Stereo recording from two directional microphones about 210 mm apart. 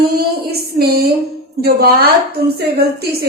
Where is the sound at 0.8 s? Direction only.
50° right (ahead or behind).